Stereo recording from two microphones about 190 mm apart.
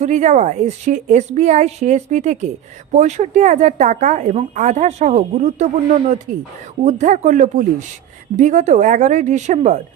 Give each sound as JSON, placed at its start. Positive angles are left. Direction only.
{"t": 0.0, "sound": "a woman's voice", "side_deg": -40}